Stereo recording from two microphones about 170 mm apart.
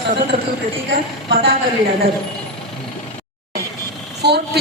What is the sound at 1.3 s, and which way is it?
Speech, 65° right (ahead or behind).